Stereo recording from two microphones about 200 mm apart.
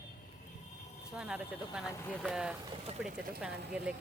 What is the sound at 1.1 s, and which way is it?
Speech, 5° right (ahead or behind).